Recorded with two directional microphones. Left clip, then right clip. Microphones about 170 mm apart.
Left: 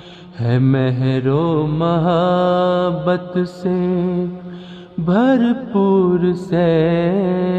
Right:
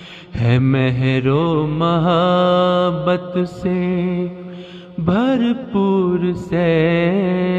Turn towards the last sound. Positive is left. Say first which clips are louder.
# even
turn(degrees=-25)  # may be behind; listen again after turning